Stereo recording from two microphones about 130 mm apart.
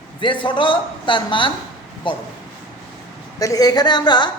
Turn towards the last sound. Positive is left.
turn(degrees=35)  # may be behind; listen again after turning